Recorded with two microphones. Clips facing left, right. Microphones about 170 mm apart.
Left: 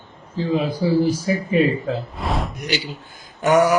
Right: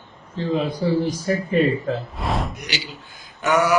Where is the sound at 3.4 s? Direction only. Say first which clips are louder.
Left 4 dB; 40° left (ahead or behind).